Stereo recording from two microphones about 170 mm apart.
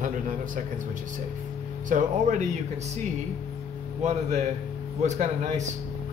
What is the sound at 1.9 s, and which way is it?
Speech, 45° right (ahead or behind).